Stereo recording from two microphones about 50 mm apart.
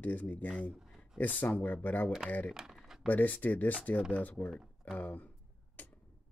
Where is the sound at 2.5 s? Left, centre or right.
Centre.